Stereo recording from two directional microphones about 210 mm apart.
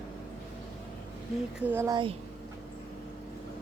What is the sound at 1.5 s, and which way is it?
Speech, 10° right (ahead or behind).